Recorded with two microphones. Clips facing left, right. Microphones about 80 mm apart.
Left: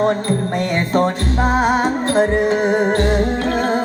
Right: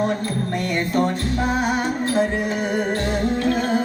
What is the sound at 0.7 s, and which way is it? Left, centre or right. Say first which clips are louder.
Music: left 3 dB; left.